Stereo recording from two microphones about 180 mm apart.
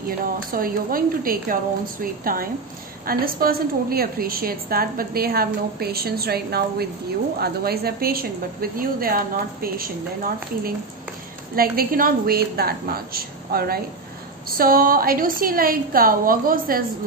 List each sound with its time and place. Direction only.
0.5 s a woman's voice: 55° right (ahead or behind)